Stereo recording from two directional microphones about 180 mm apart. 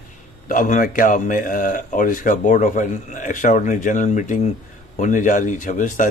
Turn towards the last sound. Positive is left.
turn(degrees=45)  # may be behind; listen again after turning